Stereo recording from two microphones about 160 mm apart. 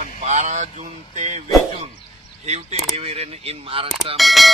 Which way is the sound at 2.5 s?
45° right (ahead or behind).